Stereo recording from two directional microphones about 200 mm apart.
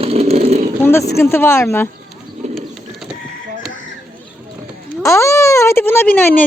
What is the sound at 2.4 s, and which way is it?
Bird, 35° right (ahead or behind).